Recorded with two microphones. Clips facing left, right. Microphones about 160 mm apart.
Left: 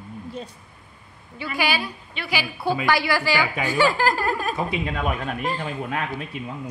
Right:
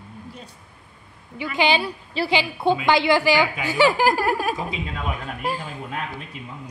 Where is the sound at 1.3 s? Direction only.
20° right (ahead or behind).